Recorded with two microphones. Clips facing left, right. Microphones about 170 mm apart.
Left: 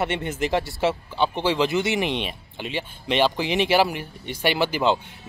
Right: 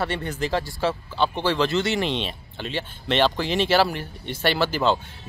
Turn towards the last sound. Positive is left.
turn(degrees=15)  # may be behind; listen again after turning